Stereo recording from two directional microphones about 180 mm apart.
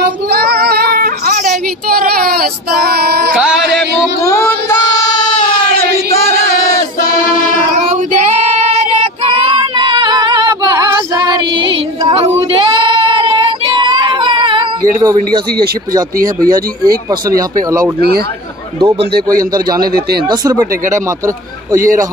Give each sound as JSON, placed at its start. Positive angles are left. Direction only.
{"t": 0.3, "sound": "child singing", "side_deg": -60}
{"t": 3.3, "sound": "a sound", "side_deg": -5}
{"t": 4.2, "sound": "child singing", "side_deg": 20}
{"t": 8.5, "sound": "child singing", "side_deg": -35}
{"t": 9.8, "sound": "female singing", "side_deg": -25}
{"t": 12.4, "sound": "child singing", "side_deg": -30}
{"t": 16.4, "sound": "speech", "side_deg": -55}
{"t": 18.8, "sound": "speech", "side_deg": -30}
{"t": 19.8, "sound": "speech", "side_deg": -55}
{"t": 20.2, "sound": "speech", "side_deg": -20}